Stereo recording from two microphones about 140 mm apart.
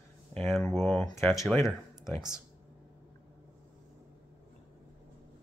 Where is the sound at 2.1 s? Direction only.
5° right (ahead or behind).